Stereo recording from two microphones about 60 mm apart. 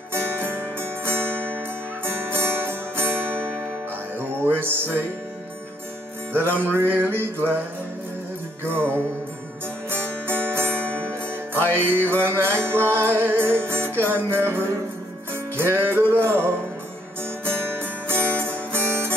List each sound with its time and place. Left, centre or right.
0.1 s music: right
4.6 s music: right
6.3 s music: right
8.6 s music: right
10.8 s music: left
11.7 s music: right